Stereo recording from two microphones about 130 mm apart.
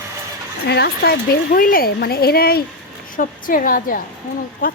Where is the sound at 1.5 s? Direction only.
90° left.